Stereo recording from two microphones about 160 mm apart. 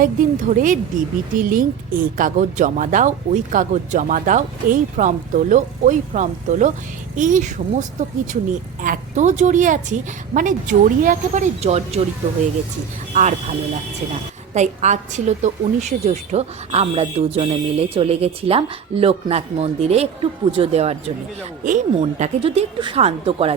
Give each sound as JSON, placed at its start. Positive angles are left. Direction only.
{"t": 0.0, "sound": "a woman's voice", "side_deg": -55}
{"t": 13.1, "sound": "a woman's voice", "side_deg": -50}